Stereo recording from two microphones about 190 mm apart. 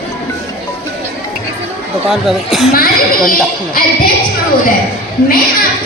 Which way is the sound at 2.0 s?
Centre (ahead or behind).